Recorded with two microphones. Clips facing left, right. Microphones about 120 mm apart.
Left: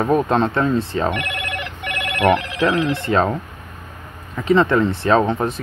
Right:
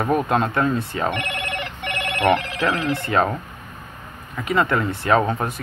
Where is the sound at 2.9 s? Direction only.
25° left (ahead or behind).